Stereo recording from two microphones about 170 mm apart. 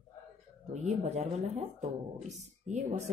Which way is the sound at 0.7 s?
40° right (ahead or behind).